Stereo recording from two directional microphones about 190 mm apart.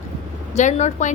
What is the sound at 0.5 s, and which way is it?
Speech, 40° left (ahead or behind).